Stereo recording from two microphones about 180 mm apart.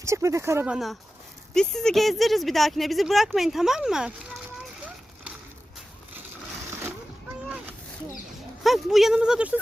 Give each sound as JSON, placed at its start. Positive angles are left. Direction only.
{"t": 0.0, "sound": "speech", "side_deg": -15}
{"t": 8.6, "sound": "speech", "side_deg": 0}